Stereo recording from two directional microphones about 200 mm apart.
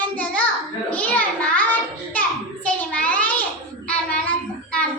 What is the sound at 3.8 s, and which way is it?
Child singing, 5° left (ahead or behind).